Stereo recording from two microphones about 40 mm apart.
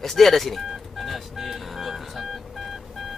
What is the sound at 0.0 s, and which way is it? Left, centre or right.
Telephone dialing, centre.